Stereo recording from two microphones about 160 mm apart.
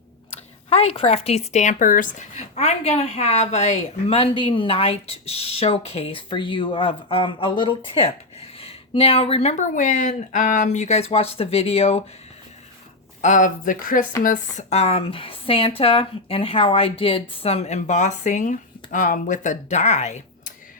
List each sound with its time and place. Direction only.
0.7 s speech: 40° left (ahead or behind)
13.2 s speech: 50° left (ahead or behind)
14.3 s a woman's voice: 45° left (ahead or behind)